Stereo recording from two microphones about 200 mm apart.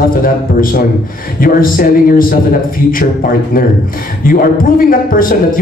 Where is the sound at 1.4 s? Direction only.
45° left (ahead or behind).